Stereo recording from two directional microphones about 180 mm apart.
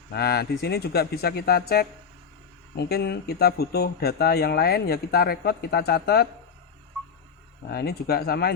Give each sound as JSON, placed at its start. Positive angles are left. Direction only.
{"t": 0.1, "sound": "speech", "side_deg": 65}
{"t": 7.7, "sound": "speech", "side_deg": 60}